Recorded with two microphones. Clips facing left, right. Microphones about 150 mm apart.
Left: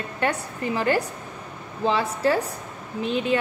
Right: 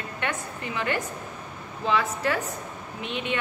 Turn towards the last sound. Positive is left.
turn(degrees=35)  # may be behind; listen again after turning